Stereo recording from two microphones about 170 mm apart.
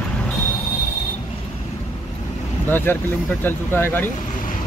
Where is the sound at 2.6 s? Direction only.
10° left (ahead or behind).